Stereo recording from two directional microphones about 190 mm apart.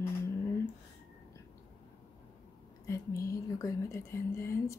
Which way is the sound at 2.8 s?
15° left (ahead or behind).